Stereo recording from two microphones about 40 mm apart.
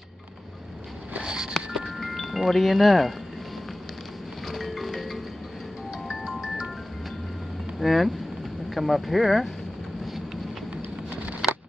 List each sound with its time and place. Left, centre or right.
1.2 s music: centre
1.9 s chime: centre
4.5 s music: centre
6.2 s music: centre
7.8 s speech: centre
11.4 s a sound: centre